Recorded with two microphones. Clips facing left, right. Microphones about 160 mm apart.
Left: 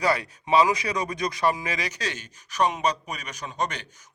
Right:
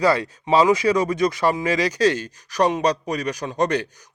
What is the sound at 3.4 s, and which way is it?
Speech, 50° right (ahead or behind).